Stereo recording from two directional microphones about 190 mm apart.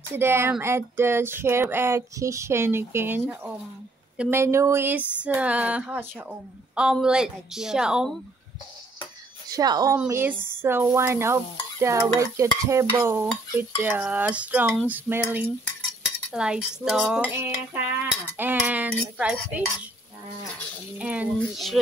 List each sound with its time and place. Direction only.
0.1 s speech: 10° right (ahead or behind)
6.7 s cutlery: 5° right (ahead or behind)
9.5 s a woman's voice: 20° right (ahead or behind)
16.3 s cutlery: 5° right (ahead or behind)
18.4 s speech: 10° right (ahead or behind)
21.0 s cutlery: 5° right (ahead or behind)